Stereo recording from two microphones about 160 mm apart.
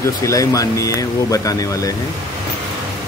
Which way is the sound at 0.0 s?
20° left (ahead or behind).